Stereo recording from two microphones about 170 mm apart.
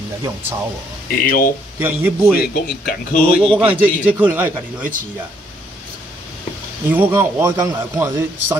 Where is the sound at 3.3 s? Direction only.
Centre (ahead or behind).